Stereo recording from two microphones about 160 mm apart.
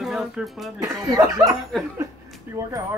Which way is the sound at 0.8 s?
20° right (ahead or behind).